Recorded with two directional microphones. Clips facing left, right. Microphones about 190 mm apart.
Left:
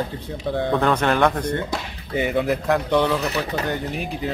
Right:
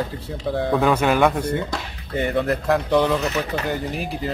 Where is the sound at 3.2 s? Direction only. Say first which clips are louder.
Right 1 dB; 35° left (ahead or behind).